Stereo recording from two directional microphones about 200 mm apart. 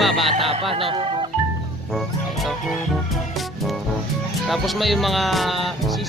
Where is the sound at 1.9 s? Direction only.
Centre (ahead or behind).